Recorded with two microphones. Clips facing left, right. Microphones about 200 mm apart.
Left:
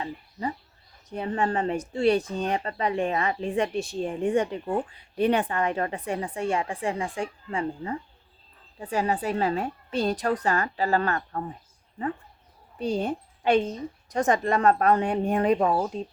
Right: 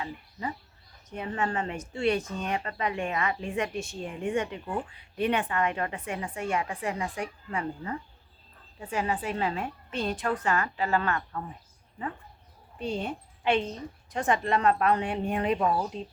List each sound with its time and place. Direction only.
0.0 s a sound: 35° left (ahead or behind)
1.1 s speech: 35° left (ahead or behind)
12.8 s a woman's voice: 40° left (ahead or behind)